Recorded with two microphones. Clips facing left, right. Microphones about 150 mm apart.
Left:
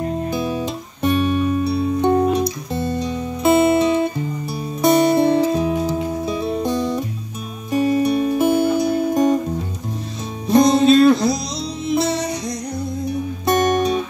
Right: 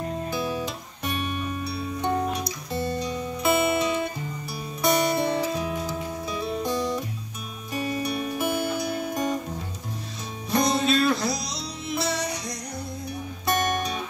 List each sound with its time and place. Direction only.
0.3 s music: 20° left (ahead or behind)
10.4 s music: 25° left (ahead or behind)